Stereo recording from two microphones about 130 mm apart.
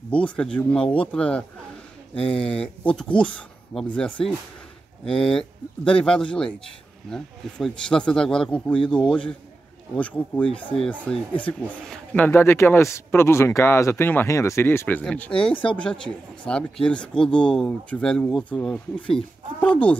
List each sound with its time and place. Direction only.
0.1 s a man's voice: 10° left (ahead or behind)